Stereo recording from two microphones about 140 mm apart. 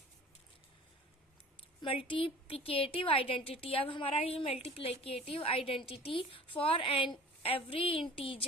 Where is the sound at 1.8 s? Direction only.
40° left (ahead or behind).